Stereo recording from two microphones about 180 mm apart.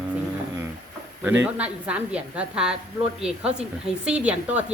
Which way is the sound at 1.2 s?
10° right (ahead or behind).